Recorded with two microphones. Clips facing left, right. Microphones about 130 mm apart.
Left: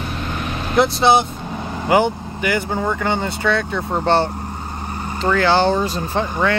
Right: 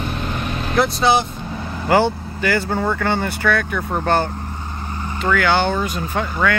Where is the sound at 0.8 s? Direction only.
25° left (ahead or behind).